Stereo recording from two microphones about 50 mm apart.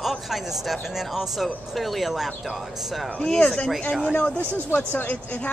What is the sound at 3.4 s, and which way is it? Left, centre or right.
Speech, left.